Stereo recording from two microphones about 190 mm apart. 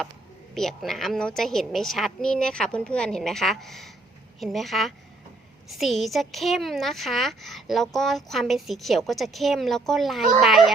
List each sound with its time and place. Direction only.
0.5 s speech: centre (ahead or behind)